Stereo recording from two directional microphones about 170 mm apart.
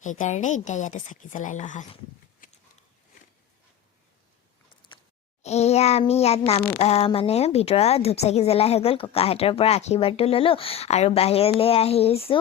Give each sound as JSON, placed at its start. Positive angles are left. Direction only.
{"t": 0.0, "sound": "a woman's voice", "side_deg": 50}
{"t": 4.9, "sound": "a sound", "side_deg": 30}
{"t": 5.4, "sound": "a woman's voice", "side_deg": 40}